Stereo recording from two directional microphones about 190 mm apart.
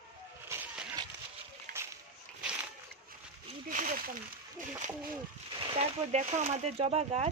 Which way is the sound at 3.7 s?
45° right (ahead or behind).